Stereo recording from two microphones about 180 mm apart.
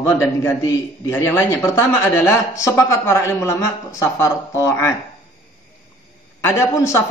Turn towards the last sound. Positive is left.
turn(degrees=15)  # may be behind; listen again after turning